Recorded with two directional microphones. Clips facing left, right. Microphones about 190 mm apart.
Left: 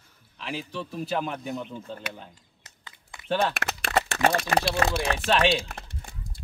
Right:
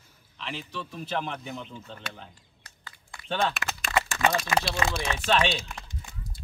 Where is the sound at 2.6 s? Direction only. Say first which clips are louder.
Even; 20° left (ahead or behind).